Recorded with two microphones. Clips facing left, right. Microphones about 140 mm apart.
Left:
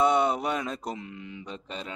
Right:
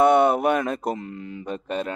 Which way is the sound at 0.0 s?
55° right (ahead or behind).